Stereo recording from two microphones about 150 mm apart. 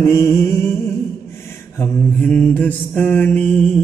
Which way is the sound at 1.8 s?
10° left (ahead or behind).